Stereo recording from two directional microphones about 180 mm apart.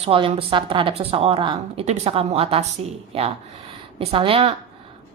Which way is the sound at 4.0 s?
30° right (ahead or behind).